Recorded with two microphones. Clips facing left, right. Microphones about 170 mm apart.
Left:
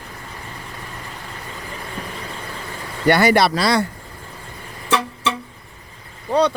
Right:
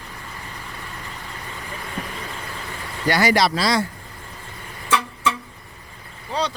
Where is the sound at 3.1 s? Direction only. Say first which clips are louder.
Left 4 dB; 60° left (ahead or behind).